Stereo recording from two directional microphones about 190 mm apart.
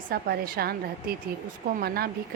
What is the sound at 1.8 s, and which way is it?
Speech, 55° right (ahead or behind).